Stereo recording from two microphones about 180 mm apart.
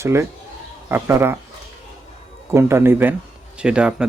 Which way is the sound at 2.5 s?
15° right (ahead or behind).